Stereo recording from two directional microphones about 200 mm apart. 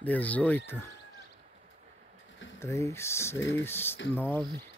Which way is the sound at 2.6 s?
15° left (ahead or behind).